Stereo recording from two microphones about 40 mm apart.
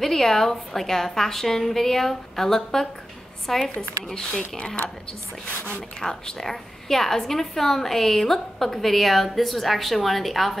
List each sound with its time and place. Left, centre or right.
0.0 s a woman's voice: centre
4.1 s speech: left
5.9 s a woman's voice: centre